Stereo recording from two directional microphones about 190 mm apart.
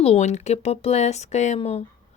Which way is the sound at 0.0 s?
35° left (ahead or behind).